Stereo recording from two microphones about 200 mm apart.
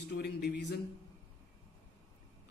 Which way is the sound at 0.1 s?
55° left (ahead or behind).